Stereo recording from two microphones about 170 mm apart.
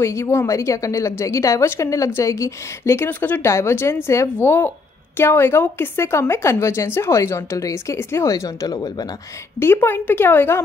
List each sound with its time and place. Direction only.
0.0 s a woman's voice: 15° left (ahead or behind)